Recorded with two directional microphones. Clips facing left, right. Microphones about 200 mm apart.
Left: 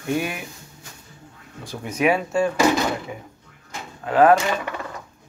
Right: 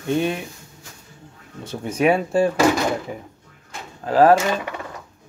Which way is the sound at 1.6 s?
30° right (ahead or behind).